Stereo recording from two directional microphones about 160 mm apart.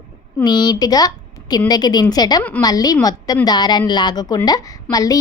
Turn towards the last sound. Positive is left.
turn(degrees=25)  # may be behind; listen again after turning